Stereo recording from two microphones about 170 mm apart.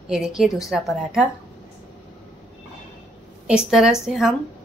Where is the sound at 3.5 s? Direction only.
5° right (ahead or behind).